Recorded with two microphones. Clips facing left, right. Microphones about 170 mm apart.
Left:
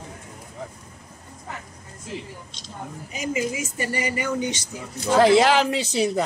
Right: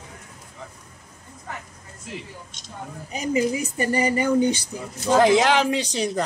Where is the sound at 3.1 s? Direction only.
35° right (ahead or behind).